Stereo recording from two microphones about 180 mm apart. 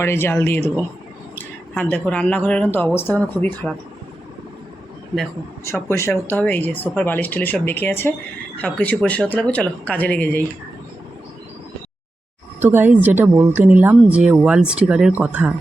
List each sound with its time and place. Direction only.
0.0 s speech: 15° left (ahead or behind)
5.7 s speech: 15° left (ahead or behind)
12.5 s speech: 10° right (ahead or behind)